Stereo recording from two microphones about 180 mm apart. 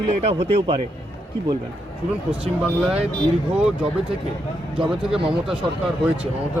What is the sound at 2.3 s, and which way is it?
Speech, 5° right (ahead or behind).